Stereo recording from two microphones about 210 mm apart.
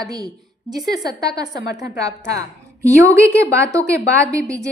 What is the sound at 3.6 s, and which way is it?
Speech, 15° right (ahead or behind).